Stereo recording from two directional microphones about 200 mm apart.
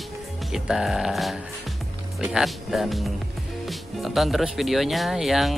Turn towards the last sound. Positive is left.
turn(degrees=0)  # may be behind; listen again after turning